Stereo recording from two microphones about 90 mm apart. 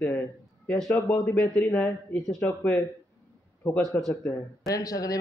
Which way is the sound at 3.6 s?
20° left (ahead or behind).